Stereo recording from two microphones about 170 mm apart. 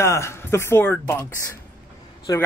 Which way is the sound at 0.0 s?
15° left (ahead or behind).